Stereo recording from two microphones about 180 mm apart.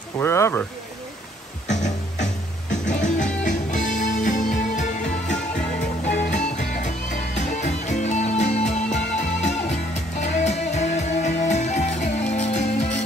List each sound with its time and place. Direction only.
0.2 s speech: 15° left (ahead or behind)
1.7 s music: 40° left (ahead or behind)
6.1 s music: 40° left (ahead or behind)